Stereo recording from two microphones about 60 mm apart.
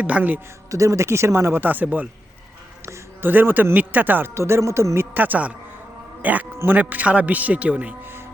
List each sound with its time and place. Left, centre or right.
0.0 s speech: right
0.7 s speech: right
2.8 s speech: right
4.4 s speech: right
5.1 s speech: right